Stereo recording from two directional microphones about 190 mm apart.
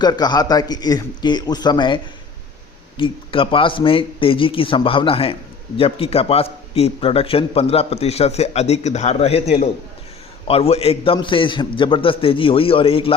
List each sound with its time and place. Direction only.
0.0 s a man's voice: 20° left (ahead or behind)
3.0 s a man's voice: 25° left (ahead or behind)